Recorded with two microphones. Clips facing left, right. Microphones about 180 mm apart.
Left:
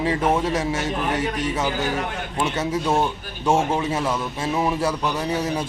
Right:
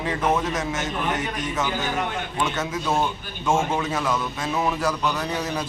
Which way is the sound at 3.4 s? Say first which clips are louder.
Left 2 dB; 30° left (ahead or behind).